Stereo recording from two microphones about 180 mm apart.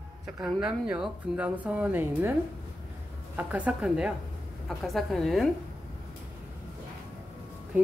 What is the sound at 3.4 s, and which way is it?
Speech, 5° right (ahead or behind).